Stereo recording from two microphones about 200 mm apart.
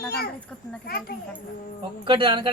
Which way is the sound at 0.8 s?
50° left (ahead or behind).